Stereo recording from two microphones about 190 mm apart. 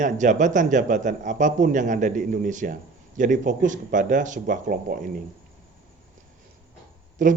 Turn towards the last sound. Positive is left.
turn(degrees=-45)  # may be behind; listen again after turning